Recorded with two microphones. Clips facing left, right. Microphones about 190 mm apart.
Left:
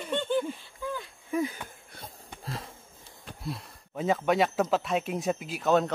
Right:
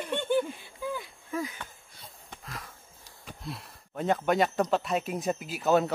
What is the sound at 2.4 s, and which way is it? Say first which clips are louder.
Sniff: left 5 dB; 30° left (ahead or behind).